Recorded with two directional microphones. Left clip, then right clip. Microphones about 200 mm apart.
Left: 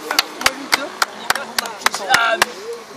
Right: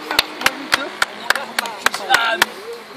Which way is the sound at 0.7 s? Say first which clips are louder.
Even; 50° left (ahead or behind).